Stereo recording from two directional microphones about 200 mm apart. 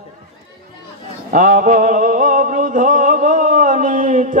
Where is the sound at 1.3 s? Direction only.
45° right (ahead or behind).